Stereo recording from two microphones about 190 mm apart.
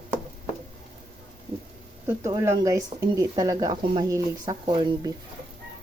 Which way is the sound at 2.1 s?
15° right (ahead or behind).